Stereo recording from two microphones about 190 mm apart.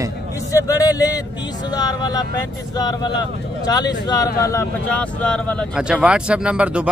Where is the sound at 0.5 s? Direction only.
20° left (ahead or behind).